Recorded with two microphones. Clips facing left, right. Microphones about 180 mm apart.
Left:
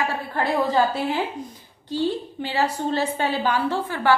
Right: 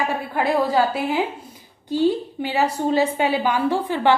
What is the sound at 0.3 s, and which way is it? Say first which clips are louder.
A woman's voice: right 2 dB; 10° right (ahead or behind).